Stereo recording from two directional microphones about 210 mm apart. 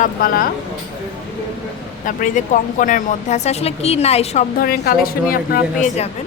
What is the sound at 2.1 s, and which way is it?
Speech, 40° left (ahead or behind).